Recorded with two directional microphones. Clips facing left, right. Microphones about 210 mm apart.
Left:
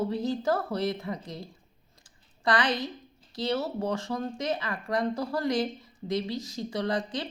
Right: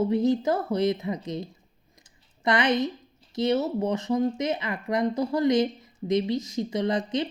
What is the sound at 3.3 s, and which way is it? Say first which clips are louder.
A woman's voice: right 5 dB; 20° right (ahead or behind).